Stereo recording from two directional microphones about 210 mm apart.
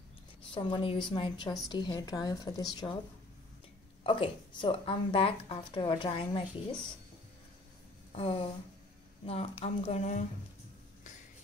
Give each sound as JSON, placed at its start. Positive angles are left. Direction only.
{"t": 0.6, "sound": "speech", "side_deg": 25}
{"t": 4.0, "sound": "speech", "side_deg": 25}
{"t": 8.1, "sound": "speech", "side_deg": 25}